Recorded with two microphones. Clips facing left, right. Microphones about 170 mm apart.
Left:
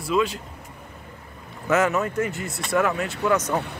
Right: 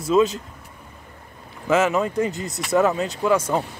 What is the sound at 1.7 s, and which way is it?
Speech, 25° right (ahead or behind).